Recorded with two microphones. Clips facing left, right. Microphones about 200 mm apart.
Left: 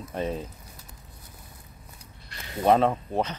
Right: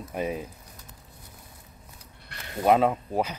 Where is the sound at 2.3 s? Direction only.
60° right (ahead or behind).